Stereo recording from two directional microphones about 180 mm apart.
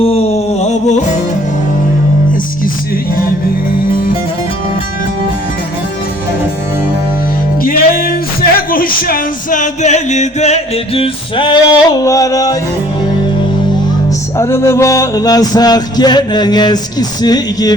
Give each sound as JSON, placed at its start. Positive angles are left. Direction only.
{"t": 0.0, "sound": "a sound", "side_deg": 35}
{"t": 7.6, "sound": "music", "side_deg": 50}
{"t": 8.5, "sound": "speech", "side_deg": 55}
{"t": 14.3, "sound": "music", "side_deg": 15}